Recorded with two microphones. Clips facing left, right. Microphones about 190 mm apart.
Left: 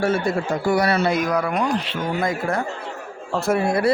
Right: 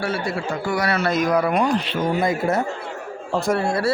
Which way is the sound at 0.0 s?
45° left (ahead or behind).